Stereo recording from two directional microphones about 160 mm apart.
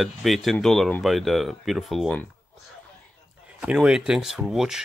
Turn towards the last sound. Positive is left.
turn(degrees=-5)  # may be behind; listen again after turning